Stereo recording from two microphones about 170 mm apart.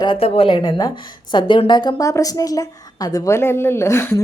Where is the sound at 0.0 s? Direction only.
30° left (ahead or behind).